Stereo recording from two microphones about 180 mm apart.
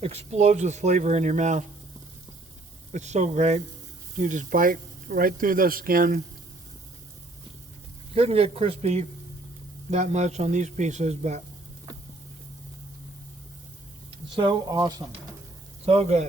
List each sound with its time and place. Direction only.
0.0 s speech: 35° right (ahead or behind)
2.9 s speech: 40° right (ahead or behind)
8.1 s speech: 35° right (ahead or behind)
14.3 s speech: 25° right (ahead or behind)
15.9 s speech: 35° right (ahead or behind)